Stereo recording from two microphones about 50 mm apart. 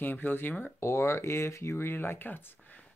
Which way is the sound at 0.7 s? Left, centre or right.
Left.